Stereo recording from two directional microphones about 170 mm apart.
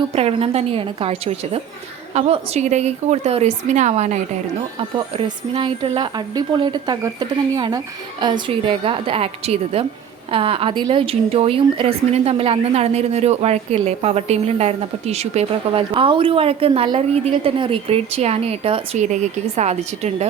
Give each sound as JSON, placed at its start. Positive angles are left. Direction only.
{"t": 0.2, "sound": "a woman's voice", "side_deg": -35}